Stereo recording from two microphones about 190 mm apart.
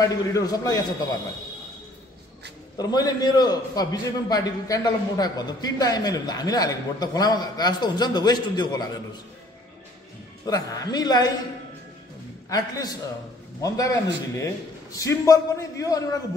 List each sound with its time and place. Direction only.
0.0 s a man's voice: 20° left (ahead or behind)
2.8 s a man's voice: 20° left (ahead or behind)
10.4 s a man's voice: 20° left (ahead or behind)
12.4 s a man's voice: 20° left (ahead or behind)